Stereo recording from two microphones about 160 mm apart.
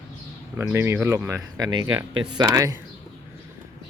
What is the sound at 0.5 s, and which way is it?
Speech, 15° right (ahead or behind).